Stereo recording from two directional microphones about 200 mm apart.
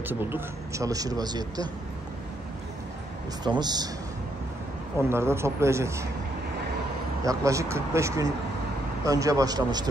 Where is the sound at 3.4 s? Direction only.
20° right (ahead or behind).